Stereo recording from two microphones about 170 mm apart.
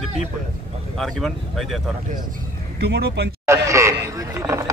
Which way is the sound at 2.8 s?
70° right (ahead or behind).